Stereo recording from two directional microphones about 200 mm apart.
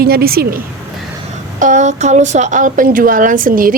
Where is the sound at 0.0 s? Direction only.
50° right (ahead or behind).